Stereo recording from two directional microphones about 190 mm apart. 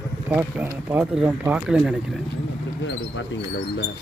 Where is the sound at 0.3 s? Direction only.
10° right (ahead or behind).